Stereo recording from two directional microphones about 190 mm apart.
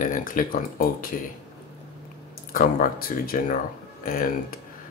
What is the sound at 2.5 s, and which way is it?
Speech, 50° left (ahead or behind).